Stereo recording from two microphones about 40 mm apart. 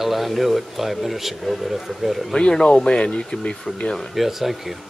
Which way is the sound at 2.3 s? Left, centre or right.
Centre.